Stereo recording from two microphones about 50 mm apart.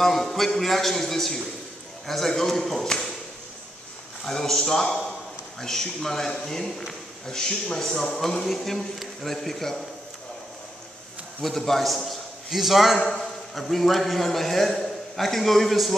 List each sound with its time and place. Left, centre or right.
0.0 s a man's voice: centre
4.2 s a man's voice: centre
11.4 s a man's voice: centre